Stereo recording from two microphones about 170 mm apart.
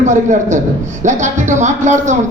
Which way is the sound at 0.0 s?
45° right (ahead or behind).